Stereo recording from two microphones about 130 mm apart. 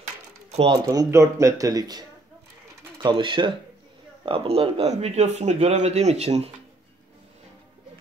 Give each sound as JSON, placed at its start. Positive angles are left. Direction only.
{"t": 0.8, "sound": "speech", "side_deg": -25}